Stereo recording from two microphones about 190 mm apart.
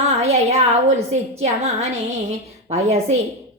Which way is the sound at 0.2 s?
35° right (ahead or behind).